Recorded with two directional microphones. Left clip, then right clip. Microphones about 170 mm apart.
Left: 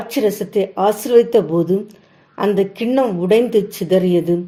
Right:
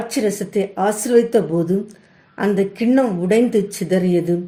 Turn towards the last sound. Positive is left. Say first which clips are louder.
# left 3 dB
turn(degrees=30)  # may be behind; listen again after turning